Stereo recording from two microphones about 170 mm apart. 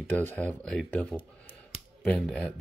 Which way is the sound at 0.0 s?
10° left (ahead or behind).